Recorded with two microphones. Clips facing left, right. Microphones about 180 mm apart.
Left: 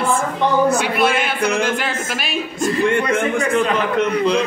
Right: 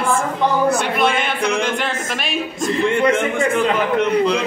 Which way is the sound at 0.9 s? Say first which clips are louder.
Left 1 dB; 5° left (ahead or behind).